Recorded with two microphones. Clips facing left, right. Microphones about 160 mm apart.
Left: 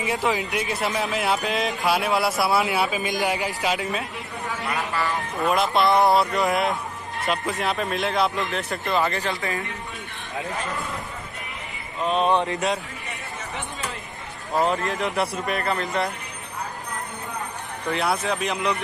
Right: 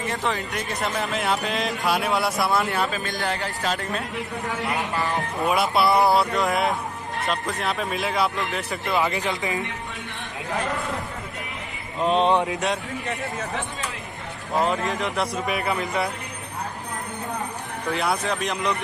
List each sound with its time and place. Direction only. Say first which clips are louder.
0.0 s speech: left 3 dB; 10° left (ahead or behind)
4.6 s speech: left 1 dB; 20° right (ahead or behind)
5.5 s speech: left 1 dB; 5° right (ahead or behind)
12.0 s speech: right 1 dB; 25° right (ahead or behind)
12.4 s speech: left 1 dB; centre (ahead or behind)
14.6 s speech: left 1 dB; centre (ahead or behind)
17.9 s speech: left 1 dB; centre (ahead or behind)